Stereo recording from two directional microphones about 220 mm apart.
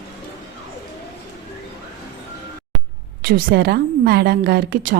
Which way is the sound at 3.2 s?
45° right (ahead or behind).